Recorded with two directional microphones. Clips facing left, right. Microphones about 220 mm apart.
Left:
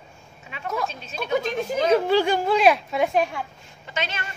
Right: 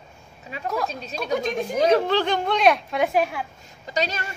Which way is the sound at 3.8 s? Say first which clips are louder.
Right 5 dB; 40° right (ahead or behind).